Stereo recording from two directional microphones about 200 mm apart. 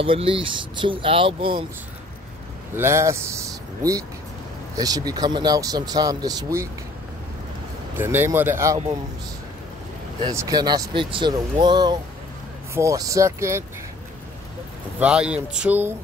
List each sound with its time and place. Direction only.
0.0 s speech: 25° right (ahead or behind)
2.7 s speech: 15° right (ahead or behind)
7.9 s speech: 10° right (ahead or behind)
10.2 s speech: 15° right (ahead or behind)
15.0 s speech: 5° right (ahead or behind)